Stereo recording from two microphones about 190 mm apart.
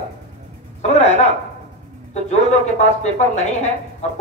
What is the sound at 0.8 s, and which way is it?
Speech, 35° left (ahead or behind).